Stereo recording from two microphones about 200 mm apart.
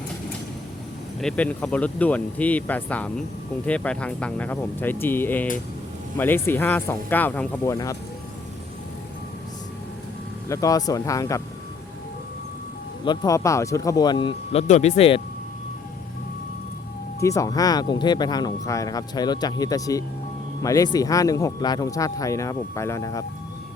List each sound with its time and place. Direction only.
1.2 s speech: 5° left (ahead or behind)
10.5 s speech: 15° left (ahead or behind)
13.1 s speech: 15° left (ahead or behind)
17.2 s speech: 15° left (ahead or behind)